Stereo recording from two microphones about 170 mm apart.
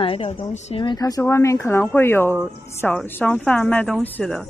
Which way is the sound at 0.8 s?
25° left (ahead or behind).